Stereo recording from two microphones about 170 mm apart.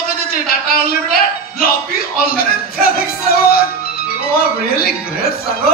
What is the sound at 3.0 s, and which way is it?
Music, 60° left (ahead or behind).